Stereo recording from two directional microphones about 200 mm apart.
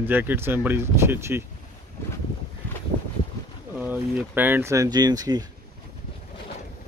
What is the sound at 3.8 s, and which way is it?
Speech, 10° right (ahead or behind).